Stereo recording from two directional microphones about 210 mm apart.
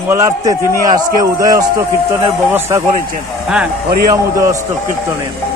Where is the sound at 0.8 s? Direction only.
40° right (ahead or behind).